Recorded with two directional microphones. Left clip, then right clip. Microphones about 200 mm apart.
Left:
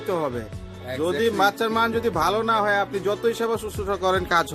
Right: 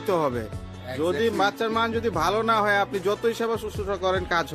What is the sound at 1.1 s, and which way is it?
Speech, centre (ahead or behind).